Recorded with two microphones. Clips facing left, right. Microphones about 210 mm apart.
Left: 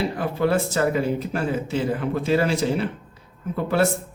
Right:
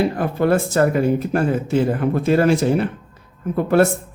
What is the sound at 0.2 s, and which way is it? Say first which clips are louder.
Speech: right 4 dB; 50° right (ahead or behind).